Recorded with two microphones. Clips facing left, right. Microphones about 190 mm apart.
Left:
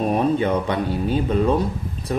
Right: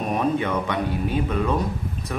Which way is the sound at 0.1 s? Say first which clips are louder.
Left 1 dB; 30° left (ahead or behind).